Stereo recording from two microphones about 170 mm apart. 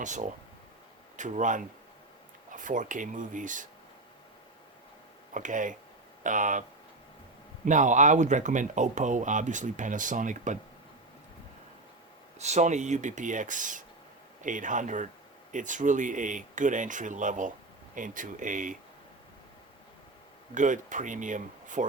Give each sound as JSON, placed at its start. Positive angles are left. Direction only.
{"t": 0.0, "sound": "speech", "side_deg": -45}
{"t": 5.3, "sound": "speech", "side_deg": -50}
{"t": 12.4, "sound": "speech", "side_deg": -40}
{"t": 20.5, "sound": "speech", "side_deg": -50}